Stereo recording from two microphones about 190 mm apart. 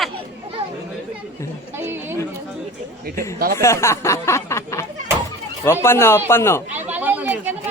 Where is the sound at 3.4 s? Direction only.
55° right (ahead or behind).